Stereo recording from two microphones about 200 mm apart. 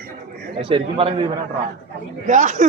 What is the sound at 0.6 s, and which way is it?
Speech, 25° right (ahead or behind).